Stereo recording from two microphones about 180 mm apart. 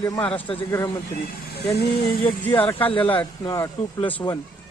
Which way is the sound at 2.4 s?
10° left (ahead or behind).